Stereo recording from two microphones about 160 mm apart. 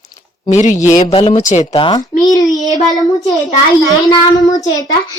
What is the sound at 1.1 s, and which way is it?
Speech, 30° left (ahead or behind).